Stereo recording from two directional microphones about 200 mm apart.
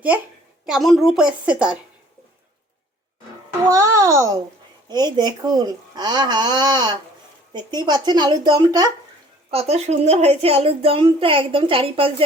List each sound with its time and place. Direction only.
0.6 s a woman's voice: centre (ahead or behind)
3.7 s a sound: 15° right (ahead or behind)
4.9 s a child's voice: 20° right (ahead or behind)
9.5 s a child's voice: 30° right (ahead or behind)